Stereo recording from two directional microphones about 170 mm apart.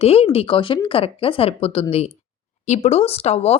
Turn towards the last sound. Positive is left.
turn(degrees=35)  # may be behind; listen again after turning